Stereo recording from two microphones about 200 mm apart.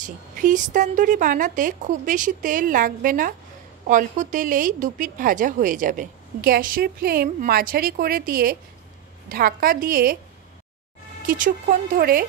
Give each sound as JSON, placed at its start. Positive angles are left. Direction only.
{"t": 0.0, "sound": "speech", "side_deg": -40}
{"t": 11.2, "sound": "speech", "side_deg": -40}